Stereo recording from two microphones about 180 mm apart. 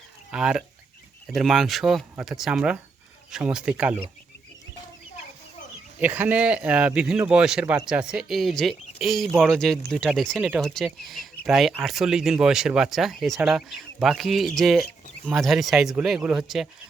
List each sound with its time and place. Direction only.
0.3 s speech: 5° right (ahead or behind)
6.0 s speech: 10° right (ahead or behind)